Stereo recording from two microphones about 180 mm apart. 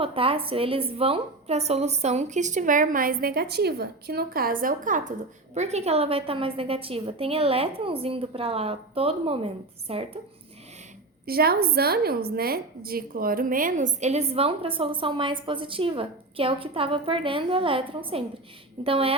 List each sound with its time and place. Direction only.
0.0 s a woman's voice: 30° right (ahead or behind)
11.3 s a woman's voice: 60° right (ahead or behind); by 19.1 s 30° right (ahead or behind)